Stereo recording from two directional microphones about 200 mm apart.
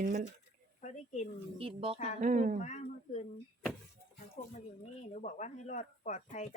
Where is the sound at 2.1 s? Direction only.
40° right (ahead or behind).